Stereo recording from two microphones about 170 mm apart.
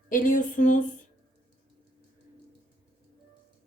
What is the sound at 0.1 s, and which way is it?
Speech, 50° left (ahead or behind).